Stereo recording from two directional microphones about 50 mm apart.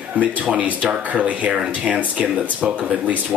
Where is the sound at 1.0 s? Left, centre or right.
Right.